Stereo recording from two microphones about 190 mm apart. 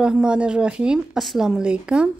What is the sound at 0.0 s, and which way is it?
A woman's voice, 5° right (ahead or behind).